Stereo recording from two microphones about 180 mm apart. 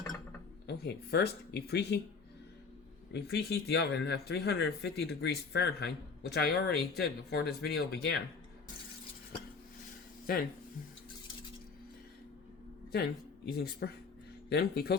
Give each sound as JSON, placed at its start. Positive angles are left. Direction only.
{"t": 0.7, "sound": "speech", "side_deg": 65}
{"t": 3.1, "sound": "speech", "side_deg": 65}
{"t": 10.3, "sound": "speech", "side_deg": 55}
{"t": 12.9, "sound": "speech", "side_deg": 60}